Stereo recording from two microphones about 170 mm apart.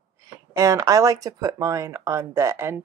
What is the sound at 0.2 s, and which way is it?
Speech, 20° right (ahead or behind).